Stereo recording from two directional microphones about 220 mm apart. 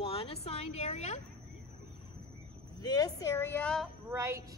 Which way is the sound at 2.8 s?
15° left (ahead or behind).